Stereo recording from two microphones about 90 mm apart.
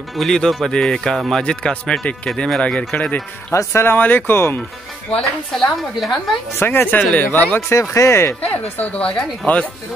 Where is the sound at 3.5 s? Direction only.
30° left (ahead or behind).